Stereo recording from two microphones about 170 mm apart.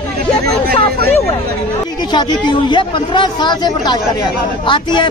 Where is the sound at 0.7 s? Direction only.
65° right (ahead or behind).